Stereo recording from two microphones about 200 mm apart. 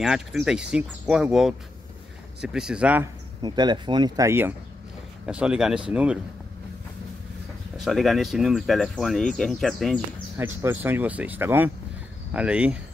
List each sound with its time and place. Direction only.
0.0 s speech: 5° right (ahead or behind)
3.4 s speech: 20° right (ahead or behind); by 6.1 s 5° right (ahead or behind)
7.8 s speech: centre (ahead or behind)
10.3 s speech: 10° right (ahead or behind)